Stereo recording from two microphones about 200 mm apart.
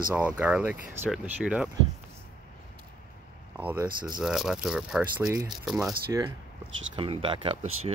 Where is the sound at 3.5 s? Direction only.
10° right (ahead or behind).